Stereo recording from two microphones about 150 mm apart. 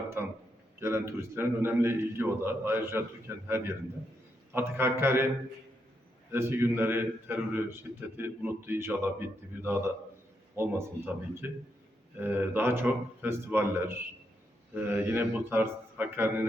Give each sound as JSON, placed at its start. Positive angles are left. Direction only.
{"t": 0.2, "sound": "a sound", "side_deg": -15}
{"t": 0.8, "sound": "a man's voice", "side_deg": -15}
{"t": 6.3, "sound": "a man's voice", "side_deg": -15}